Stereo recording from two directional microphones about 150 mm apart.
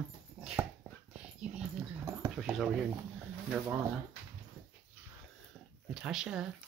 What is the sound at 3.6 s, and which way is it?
Speech, 15° right (ahead or behind).